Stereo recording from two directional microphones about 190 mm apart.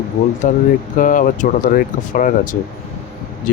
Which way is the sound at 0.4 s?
40° left (ahead or behind).